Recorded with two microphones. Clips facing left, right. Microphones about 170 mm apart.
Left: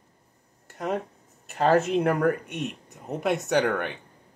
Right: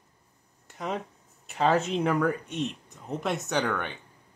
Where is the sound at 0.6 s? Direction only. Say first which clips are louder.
Left 4 dB; 50° left (ahead or behind).